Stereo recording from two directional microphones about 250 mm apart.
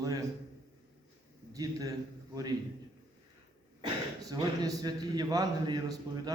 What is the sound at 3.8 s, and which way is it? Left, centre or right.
Speech, centre.